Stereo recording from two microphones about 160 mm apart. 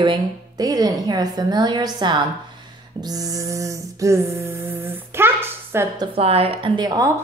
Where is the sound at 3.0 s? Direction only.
25° right (ahead or behind).